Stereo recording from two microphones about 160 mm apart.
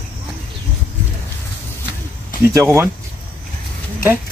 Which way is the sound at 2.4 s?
15° right (ahead or behind).